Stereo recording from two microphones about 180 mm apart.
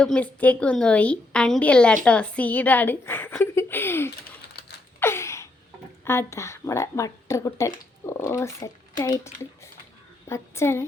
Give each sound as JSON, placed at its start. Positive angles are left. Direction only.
{"t": 0.0, "sound": "a woman's voice", "side_deg": 5}
{"t": 4.9, "sound": "gasp", "side_deg": 15}
{"t": 6.1, "sound": "a woman's voice", "side_deg": 15}